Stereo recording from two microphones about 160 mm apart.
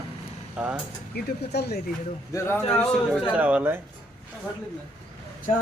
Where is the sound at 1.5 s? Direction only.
90° left.